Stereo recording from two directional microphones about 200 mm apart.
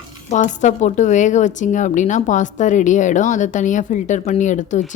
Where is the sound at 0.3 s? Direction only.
35° left (ahead or behind).